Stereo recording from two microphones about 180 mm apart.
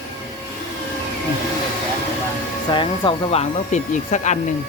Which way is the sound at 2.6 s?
25° left (ahead or behind).